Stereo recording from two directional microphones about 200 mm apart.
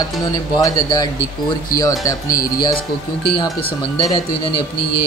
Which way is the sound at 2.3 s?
45° left (ahead or behind).